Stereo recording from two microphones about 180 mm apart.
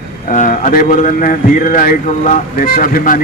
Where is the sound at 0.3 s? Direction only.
50° left (ahead or behind).